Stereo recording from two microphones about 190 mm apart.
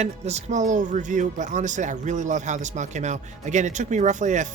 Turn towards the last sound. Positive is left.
turn(degrees=-40)  # may be behind; listen again after turning